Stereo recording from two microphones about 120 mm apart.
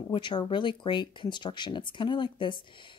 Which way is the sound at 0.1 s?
40° left (ahead or behind).